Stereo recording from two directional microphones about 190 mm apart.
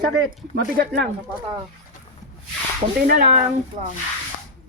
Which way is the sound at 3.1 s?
50° right (ahead or behind).